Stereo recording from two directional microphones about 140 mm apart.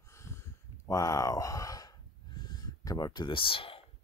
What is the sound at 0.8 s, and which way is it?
Speech, 25° left (ahead or behind).